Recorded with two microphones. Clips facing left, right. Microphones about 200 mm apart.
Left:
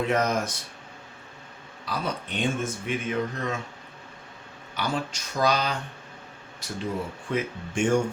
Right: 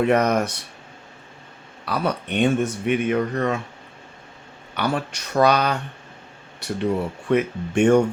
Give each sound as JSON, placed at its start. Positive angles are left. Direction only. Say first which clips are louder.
{"t": 0.0, "sound": "speech", "louder": "right 6 dB", "side_deg": -65}
{"t": 1.8, "sound": "speech", "louder": "right 6 dB", "side_deg": -65}
{"t": 4.7, "sound": "speech", "louder": "right 5 dB", "side_deg": -60}